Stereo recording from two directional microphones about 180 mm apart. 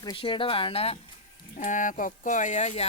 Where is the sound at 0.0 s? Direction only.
25° left (ahead or behind).